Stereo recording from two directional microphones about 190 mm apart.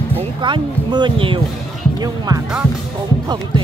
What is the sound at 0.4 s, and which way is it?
Speech, 25° right (ahead or behind).